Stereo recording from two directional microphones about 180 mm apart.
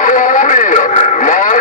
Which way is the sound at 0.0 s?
45° left (ahead or behind).